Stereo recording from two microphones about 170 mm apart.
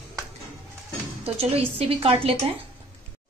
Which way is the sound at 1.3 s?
35° right (ahead or behind).